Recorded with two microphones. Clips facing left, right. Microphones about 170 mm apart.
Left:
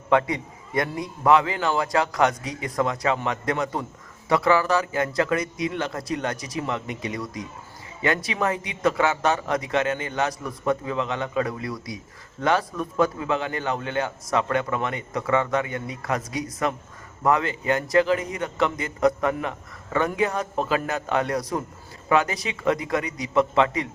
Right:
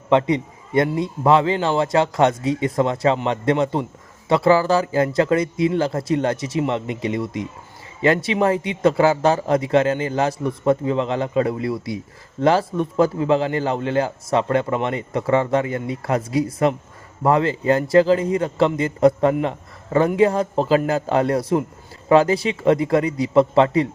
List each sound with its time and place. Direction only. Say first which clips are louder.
0.1 s a man's voice: right 4 dB; 25° right (ahead or behind)